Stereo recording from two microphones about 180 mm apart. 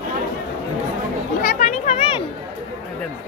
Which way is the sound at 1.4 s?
45° left (ahead or behind).